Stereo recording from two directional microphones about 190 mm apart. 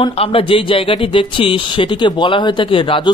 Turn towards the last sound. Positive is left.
turn(degrees=25)  # may be behind; listen again after turning